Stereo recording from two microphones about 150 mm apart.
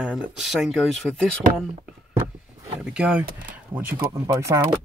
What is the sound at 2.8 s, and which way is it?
Speech, 5° right (ahead or behind).